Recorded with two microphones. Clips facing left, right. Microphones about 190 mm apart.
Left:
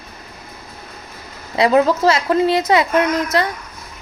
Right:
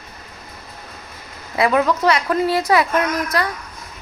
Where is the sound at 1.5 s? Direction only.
25° left (ahead or behind).